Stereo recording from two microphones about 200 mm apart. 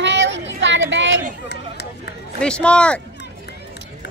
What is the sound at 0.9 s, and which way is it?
Speech, 65° right (ahead or behind).